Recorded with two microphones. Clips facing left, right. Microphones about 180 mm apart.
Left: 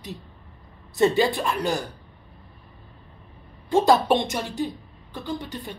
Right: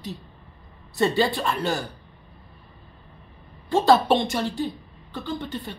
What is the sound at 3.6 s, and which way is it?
A woman's voice, 20° left (ahead or behind).